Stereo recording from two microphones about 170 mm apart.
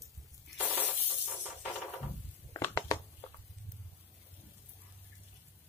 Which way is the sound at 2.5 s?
20° left (ahead or behind).